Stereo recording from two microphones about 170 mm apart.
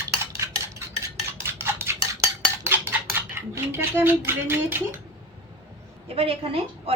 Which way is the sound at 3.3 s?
15° right (ahead or behind).